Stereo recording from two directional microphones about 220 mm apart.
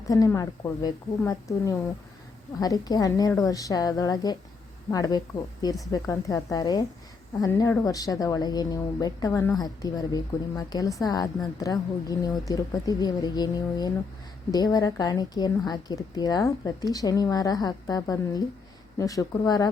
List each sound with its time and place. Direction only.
0.1 s speech: 15° left (ahead or behind)